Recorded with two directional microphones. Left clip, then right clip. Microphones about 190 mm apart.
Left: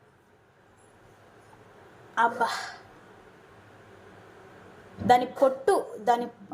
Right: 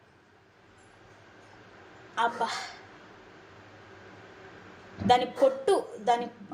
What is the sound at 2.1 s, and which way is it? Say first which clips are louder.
Speech: left 4 dB; 15° left (ahead or behind).